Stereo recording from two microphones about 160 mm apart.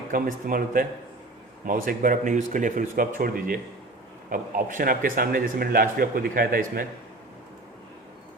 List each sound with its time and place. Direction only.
0.1 s a man's voice: 60° right (ahead or behind)